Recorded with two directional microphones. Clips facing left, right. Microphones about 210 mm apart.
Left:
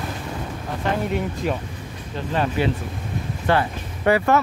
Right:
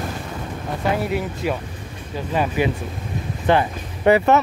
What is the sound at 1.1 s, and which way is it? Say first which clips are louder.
Speech: right 1 dB; 5° right (ahead or behind).